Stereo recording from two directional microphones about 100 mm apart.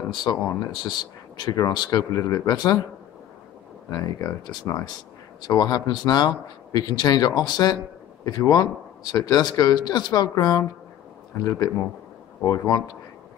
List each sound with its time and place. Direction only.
0.1 s speech: 45° left (ahead or behind)
3.9 s speech: 35° left (ahead or behind)
5.5 s speech: 40° left (ahead or behind)